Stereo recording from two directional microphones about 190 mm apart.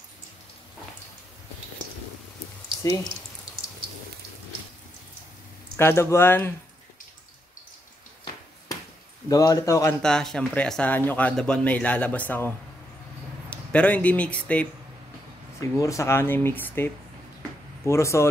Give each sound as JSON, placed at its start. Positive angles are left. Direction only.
{"t": 2.8, "sound": "speech", "side_deg": 15}
{"t": 5.8, "sound": "speech", "side_deg": 15}
{"t": 9.3, "sound": "speech", "side_deg": 20}
{"t": 10.0, "sound": "speech", "side_deg": 5}
{"t": 15.8, "sound": "speech", "side_deg": 15}